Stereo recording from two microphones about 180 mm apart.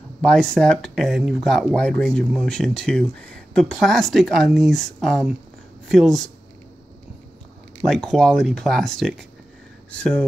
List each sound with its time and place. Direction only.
0.2 s speech: 5° left (ahead or behind)
7.8 s speech: 5° left (ahead or behind)